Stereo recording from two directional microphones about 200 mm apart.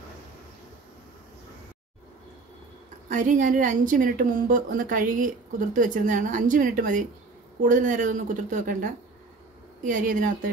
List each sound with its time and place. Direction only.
3.1 s a woman's voice: 40° right (ahead or behind)
9.8 s a woman's voice: 40° right (ahead or behind)